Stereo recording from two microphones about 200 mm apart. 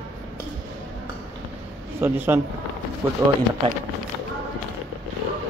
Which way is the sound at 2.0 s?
10° right (ahead or behind).